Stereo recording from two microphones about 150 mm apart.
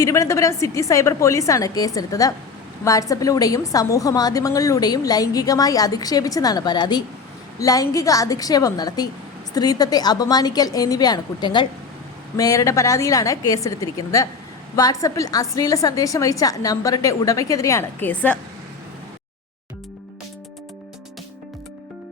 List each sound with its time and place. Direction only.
0.0 s a woman's voice: 20° left (ahead or behind)
18.1 s speech: 10° left (ahead or behind)